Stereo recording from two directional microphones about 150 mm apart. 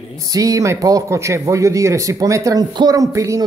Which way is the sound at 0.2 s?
25° right (ahead or behind).